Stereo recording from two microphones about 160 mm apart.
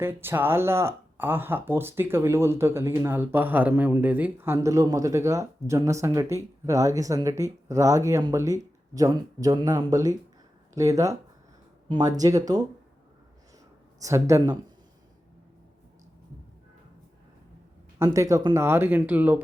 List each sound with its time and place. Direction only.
0.0 s speech: 15° right (ahead or behind)
14.0 s speech: 20° right (ahead or behind)
18.0 s speech: 20° right (ahead or behind)